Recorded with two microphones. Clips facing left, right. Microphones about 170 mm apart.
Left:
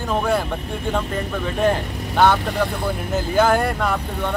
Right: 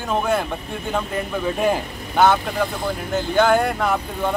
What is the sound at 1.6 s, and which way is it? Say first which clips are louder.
Speech: left 1 dB; 5° right (ahead or behind).